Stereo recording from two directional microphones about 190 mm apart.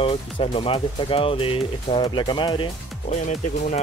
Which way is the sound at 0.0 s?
30° left (ahead or behind).